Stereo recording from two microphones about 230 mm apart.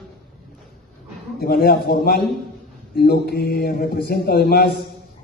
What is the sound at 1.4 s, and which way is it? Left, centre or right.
A man's voice, left.